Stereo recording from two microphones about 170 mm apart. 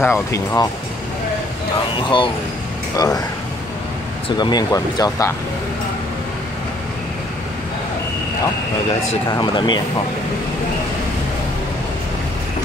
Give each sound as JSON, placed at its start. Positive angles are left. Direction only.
{"t": 0.0, "sound": "speech", "side_deg": 15}
{"t": 2.0, "sound": "speech", "side_deg": 30}
{"t": 4.4, "sound": "speech", "side_deg": 25}
{"t": 9.3, "sound": "speech", "side_deg": 25}